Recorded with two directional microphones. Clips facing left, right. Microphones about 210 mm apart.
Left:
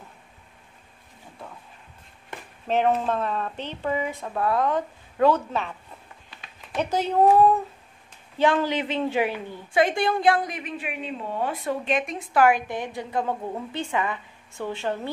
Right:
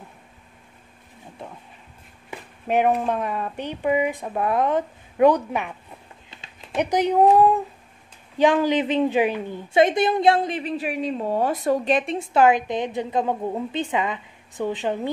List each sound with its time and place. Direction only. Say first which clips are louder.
2.3 s a woman's voice: right 3 dB; 15° right (ahead or behind)